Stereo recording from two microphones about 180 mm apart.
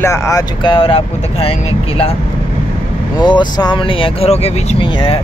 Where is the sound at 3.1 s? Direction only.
25° left (ahead or behind).